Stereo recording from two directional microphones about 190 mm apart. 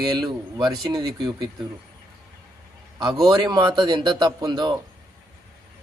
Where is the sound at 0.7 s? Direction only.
25° right (ahead or behind).